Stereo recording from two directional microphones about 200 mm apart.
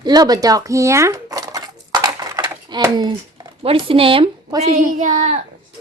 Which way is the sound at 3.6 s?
25° right (ahead or behind).